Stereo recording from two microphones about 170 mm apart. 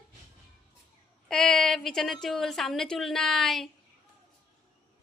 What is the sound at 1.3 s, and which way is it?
A woman's voice, centre (ahead or behind).